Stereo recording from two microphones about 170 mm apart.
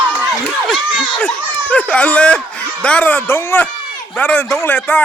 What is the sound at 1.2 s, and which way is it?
A man's voice, 10° left (ahead or behind).